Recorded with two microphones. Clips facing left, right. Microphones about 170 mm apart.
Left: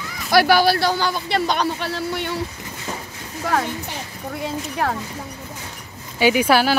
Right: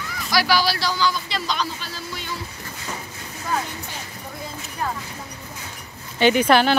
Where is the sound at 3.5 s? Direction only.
75° left (ahead or behind).